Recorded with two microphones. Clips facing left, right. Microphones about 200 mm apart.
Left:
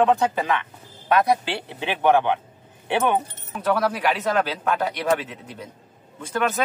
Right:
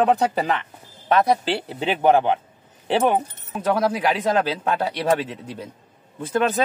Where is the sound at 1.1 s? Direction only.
30° right (ahead or behind).